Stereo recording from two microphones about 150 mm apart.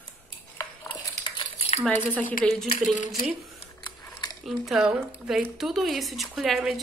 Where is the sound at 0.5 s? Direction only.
25° left (ahead or behind).